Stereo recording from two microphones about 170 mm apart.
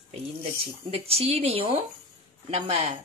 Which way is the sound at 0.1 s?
35° right (ahead or behind).